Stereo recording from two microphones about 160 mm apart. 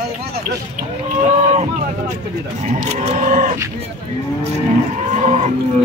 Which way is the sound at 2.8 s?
45° right (ahead or behind).